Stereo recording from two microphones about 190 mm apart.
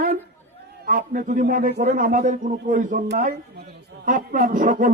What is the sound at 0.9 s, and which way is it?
A man's voice, 45° right (ahead or behind).